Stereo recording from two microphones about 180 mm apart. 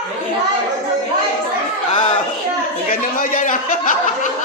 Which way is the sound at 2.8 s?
50° left (ahead or behind).